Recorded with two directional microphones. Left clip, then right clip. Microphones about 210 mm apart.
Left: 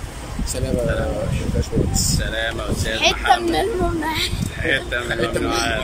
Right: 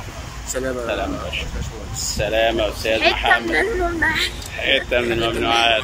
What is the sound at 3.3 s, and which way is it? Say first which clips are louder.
Speech: even; 15° left (ahead or behind).